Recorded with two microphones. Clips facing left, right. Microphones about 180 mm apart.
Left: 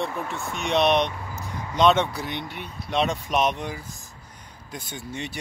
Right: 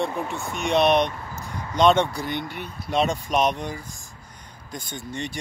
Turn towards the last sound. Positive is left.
turn(degrees=5)  # may be behind; listen again after turning